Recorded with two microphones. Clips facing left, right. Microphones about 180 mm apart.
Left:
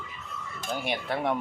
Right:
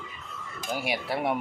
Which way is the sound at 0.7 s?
10° right (ahead or behind).